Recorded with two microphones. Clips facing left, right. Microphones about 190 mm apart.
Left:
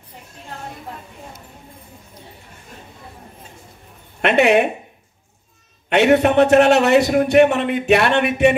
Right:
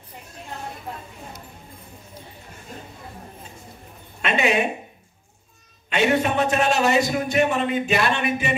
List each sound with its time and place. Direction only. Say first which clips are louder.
4.2 s a man's voice: left 7 dB; 65° left (ahead or behind)
5.9 s a man's voice: left 7 dB; 65° left (ahead or behind)